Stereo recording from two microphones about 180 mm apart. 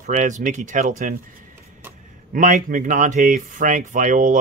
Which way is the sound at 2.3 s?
45° right (ahead or behind).